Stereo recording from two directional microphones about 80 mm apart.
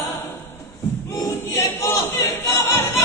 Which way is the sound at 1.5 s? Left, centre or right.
Left.